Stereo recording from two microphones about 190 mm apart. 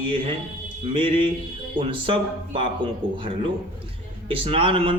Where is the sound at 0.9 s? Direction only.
25° right (ahead or behind).